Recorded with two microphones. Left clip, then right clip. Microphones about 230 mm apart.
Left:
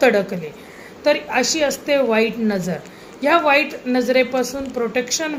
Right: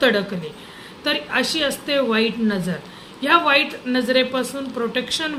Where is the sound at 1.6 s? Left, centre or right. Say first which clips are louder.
Left 3 dB; centre.